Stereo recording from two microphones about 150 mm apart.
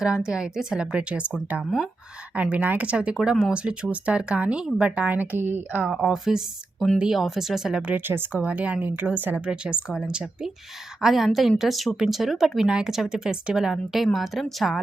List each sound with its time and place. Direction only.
0.3 s speech: 5° right (ahead or behind)